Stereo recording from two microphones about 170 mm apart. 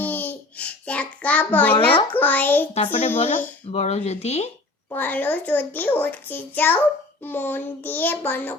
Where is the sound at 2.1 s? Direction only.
10° left (ahead or behind).